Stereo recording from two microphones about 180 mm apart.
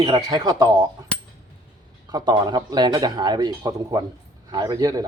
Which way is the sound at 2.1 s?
20° right (ahead or behind).